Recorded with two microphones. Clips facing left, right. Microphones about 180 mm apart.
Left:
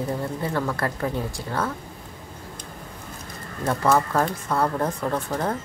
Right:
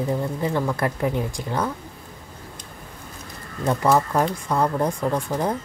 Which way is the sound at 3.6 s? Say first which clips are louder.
Right 2 dB; 15° right (ahead or behind).